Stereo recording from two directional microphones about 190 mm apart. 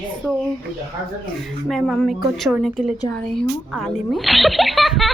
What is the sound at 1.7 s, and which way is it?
Speech, centre (ahead or behind).